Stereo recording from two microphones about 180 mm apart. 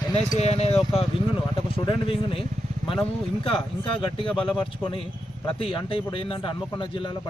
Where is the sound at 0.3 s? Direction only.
35° left (ahead or behind).